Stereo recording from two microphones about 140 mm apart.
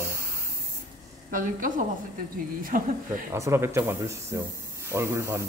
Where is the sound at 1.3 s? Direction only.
75° right (ahead or behind).